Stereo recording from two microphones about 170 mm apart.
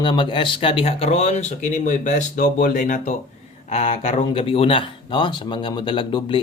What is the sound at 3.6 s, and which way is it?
Speech, 35° left (ahead or behind).